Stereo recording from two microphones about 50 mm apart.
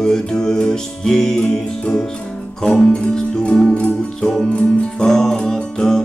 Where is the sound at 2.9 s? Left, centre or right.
Centre.